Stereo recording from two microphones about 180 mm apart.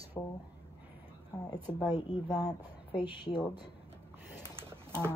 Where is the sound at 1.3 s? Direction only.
20° left (ahead or behind).